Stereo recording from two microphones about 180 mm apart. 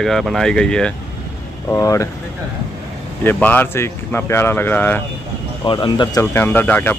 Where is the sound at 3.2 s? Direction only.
10° left (ahead or behind).